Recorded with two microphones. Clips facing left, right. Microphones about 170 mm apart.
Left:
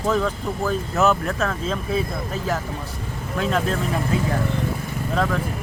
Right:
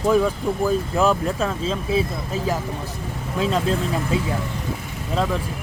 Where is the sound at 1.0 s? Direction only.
30° right (ahead or behind).